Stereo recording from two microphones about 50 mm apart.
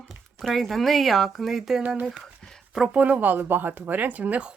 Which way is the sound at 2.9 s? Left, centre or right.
Right.